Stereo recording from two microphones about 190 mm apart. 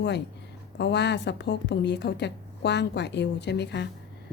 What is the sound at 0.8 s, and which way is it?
A woman's voice, 65° left (ahead or behind).